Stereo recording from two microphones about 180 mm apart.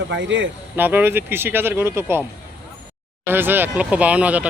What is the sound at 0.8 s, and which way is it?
Speech, 10° right (ahead or behind).